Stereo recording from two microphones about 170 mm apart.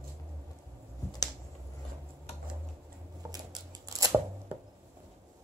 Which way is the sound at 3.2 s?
20° right (ahead or behind).